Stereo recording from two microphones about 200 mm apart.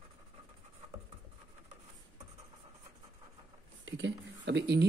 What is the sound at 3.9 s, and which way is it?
Speech, 65° right (ahead or behind).